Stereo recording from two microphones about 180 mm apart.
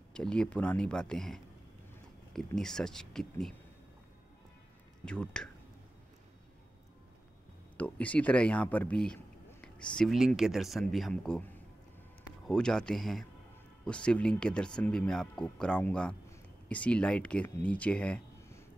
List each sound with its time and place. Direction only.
0.1 s speech: 5° left (ahead or behind)
5.0 s speech: 5° left (ahead or behind)
7.7 s speech: 10° left (ahead or behind)